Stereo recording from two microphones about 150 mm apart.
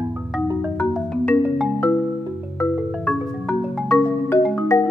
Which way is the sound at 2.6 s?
10° left (ahead or behind).